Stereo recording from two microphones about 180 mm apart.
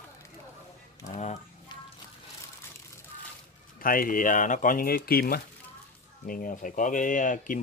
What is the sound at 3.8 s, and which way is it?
Speech, 50° left (ahead or behind).